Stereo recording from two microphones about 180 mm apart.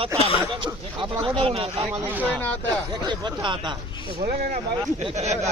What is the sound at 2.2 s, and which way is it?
Speech, 10° left (ahead or behind).